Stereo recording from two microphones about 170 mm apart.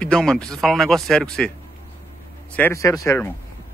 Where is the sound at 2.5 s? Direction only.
15° left (ahead or behind).